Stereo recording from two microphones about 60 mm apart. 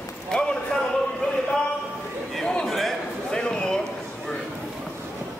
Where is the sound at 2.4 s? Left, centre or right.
Centre.